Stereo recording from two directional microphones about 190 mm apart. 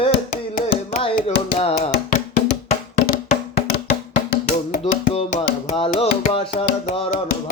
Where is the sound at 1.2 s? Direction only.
35° left (ahead or behind).